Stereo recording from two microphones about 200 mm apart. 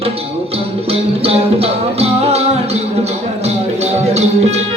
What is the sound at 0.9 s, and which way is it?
Music, 30° right (ahead or behind).